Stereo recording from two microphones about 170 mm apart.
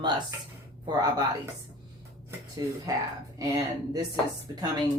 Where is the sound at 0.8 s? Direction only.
25° right (ahead or behind).